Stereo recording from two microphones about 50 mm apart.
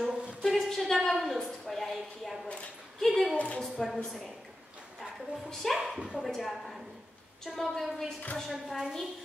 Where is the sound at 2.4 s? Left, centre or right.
Left.